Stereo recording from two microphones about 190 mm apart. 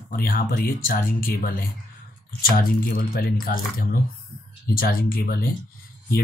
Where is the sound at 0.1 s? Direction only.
50° left (ahead or behind).